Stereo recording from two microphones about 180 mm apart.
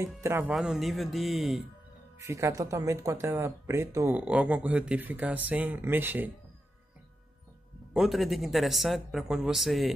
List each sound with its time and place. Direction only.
0.2 s speech: 10° right (ahead or behind)
0.5 s speech: centre (ahead or behind)
2.1 s speech: 15° right (ahead or behind)
7.9 s speech: centre (ahead or behind)